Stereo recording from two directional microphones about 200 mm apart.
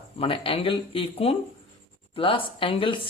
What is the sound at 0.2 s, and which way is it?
Speech, 25° left (ahead or behind).